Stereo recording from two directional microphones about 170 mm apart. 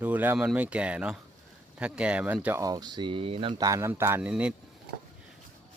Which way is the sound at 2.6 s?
20° right (ahead or behind).